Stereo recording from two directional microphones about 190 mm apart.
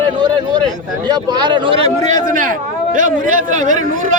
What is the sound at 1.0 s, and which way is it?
Speech, 20° right (ahead or behind).